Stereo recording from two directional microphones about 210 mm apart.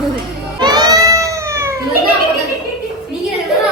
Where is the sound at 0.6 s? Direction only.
20° right (ahead or behind).